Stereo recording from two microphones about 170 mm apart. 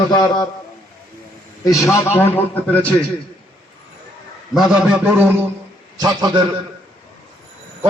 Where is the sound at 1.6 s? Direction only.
20° left (ahead or behind).